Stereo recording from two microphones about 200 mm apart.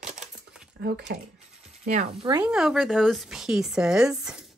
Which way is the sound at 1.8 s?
35° right (ahead or behind).